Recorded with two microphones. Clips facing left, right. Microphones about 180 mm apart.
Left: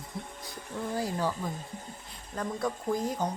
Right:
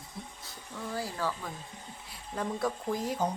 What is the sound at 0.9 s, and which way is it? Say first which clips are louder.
Speech: left 3 dB; 20° left (ahead or behind).